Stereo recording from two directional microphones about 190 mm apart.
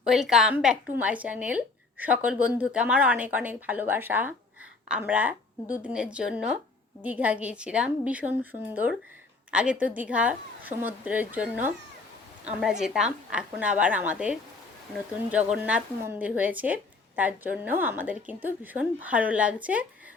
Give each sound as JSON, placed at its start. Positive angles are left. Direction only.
{"t": 0.0, "sound": "a woman's voice", "side_deg": 0}